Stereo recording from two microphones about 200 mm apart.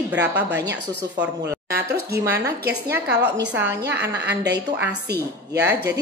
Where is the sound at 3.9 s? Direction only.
55° right (ahead or behind).